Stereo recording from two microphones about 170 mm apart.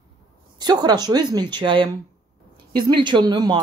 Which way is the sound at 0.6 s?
25° right (ahead or behind).